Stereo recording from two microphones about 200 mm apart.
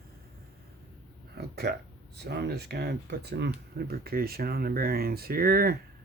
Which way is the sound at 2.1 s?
55° right (ahead or behind).